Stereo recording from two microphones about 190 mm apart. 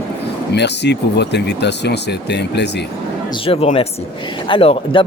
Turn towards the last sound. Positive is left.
turn(degrees=30)  # may be behind; listen again after turning